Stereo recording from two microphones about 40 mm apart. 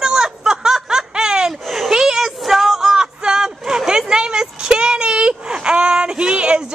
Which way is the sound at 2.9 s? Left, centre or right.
Centre.